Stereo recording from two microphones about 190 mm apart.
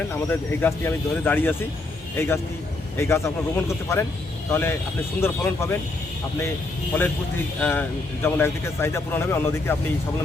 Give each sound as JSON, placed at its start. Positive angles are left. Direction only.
{"t": 0.1, "sound": "a man's voice", "side_deg": 10}
{"t": 7.6, "sound": "a man's voice", "side_deg": 10}